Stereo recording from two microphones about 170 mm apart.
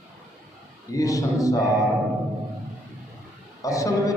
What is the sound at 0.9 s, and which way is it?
Speech, 20° left (ahead or behind).